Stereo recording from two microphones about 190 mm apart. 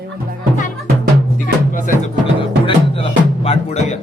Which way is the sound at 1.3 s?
45° left (ahead or behind).